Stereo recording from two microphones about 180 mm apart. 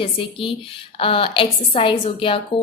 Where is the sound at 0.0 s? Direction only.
30° left (ahead or behind).